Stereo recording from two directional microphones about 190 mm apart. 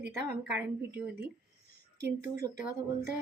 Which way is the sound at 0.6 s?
10° right (ahead or behind).